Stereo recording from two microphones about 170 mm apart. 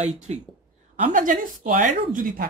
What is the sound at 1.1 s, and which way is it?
Speech, 50° right (ahead or behind).